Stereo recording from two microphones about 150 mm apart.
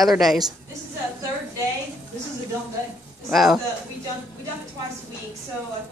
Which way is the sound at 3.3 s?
Centre (ahead or behind).